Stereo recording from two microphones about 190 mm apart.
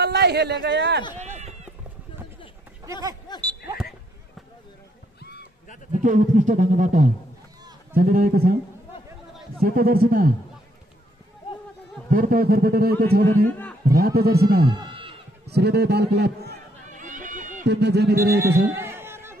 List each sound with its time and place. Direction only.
0.0 s a man's voice: 60° right (ahead or behind)
1.2 s run: 35° right (ahead or behind)
2.8 s speech: 15° right (ahead or behind)
6.0 s music: 40° right (ahead or behind)
7.9 s a man's voice: 50° right (ahead or behind)
9.6 s a man's voice: 50° right (ahead or behind)
12.1 s a man's voice: 50° right (ahead or behind)
14.7 s a sound: 25° right (ahead or behind)
15.4 s speech: 60° right (ahead or behind)
16.9 s a sound: 40° right (ahead or behind)
17.6 s speech: 60° right (ahead or behind)
18.3 s a man's voice: 15° right (ahead or behind)
18.8 s a sound: 10° right (ahead or behind)